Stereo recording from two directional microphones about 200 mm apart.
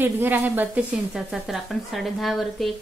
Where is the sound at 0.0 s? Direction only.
10° right (ahead or behind).